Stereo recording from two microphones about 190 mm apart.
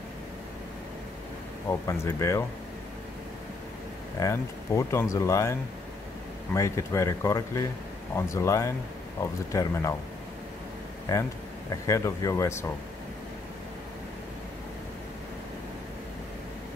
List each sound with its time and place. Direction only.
1.7 s speech: 15° left (ahead or behind)
4.2 s speech: 15° left (ahead or behind)
11.8 s speech: 15° left (ahead or behind)